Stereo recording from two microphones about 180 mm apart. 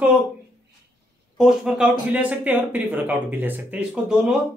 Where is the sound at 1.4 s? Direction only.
5° right (ahead or behind).